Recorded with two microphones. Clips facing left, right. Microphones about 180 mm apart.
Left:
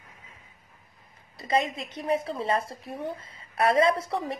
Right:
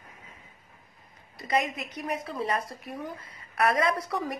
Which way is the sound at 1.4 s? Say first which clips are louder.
Left 2 dB; 30° left (ahead or behind).